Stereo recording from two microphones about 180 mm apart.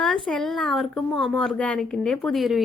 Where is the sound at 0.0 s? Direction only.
5° left (ahead or behind).